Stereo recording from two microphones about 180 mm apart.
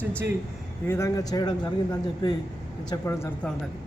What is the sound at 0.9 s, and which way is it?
A man's voice, 15° left (ahead or behind).